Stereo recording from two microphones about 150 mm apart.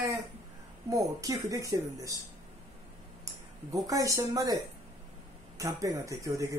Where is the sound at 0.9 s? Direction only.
20° right (ahead or behind).